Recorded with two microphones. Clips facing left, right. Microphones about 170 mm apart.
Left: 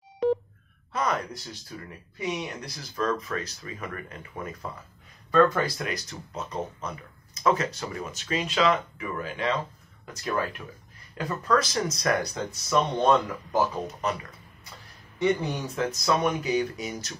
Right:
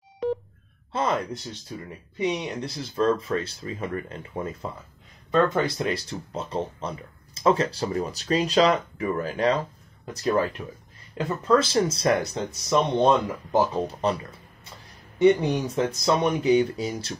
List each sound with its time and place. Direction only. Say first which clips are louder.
0.9 s speech: right 3 dB; 25° right (ahead or behind)
10.6 s speech: right 5 dB; 25° right (ahead or behind)
15.1 s speech: right 7 dB; 20° right (ahead or behind)